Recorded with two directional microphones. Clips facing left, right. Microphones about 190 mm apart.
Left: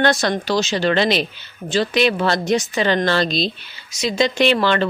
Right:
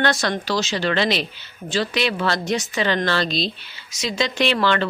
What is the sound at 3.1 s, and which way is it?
Speech, 20° left (ahead or behind).